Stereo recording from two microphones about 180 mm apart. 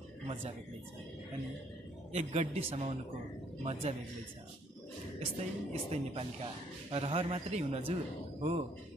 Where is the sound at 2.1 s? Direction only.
40° right (ahead or behind).